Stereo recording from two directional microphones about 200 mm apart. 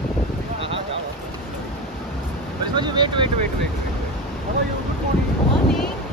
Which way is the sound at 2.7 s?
20° right (ahead or behind).